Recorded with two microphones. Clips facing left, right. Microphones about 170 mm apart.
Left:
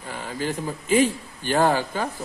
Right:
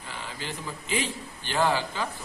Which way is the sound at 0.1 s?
45° left (ahead or behind).